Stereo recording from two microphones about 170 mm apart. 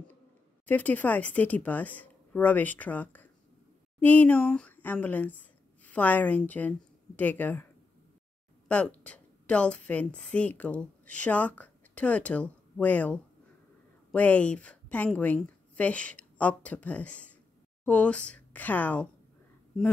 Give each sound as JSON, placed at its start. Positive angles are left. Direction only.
{"t": 0.7, "sound": "a woman's voice", "side_deg": 10}
{"t": 8.6, "sound": "a woman's voice", "side_deg": 5}